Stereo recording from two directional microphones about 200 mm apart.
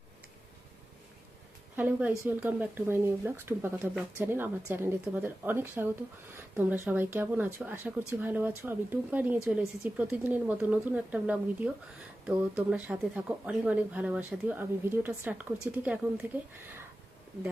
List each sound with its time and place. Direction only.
1.7 s a woman's voice: 10° right (ahead or behind)